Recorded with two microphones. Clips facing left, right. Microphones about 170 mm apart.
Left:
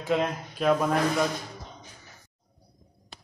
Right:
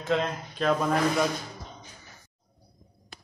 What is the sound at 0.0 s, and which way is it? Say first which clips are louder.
Speech: left 1 dB; 10° left (ahead or behind).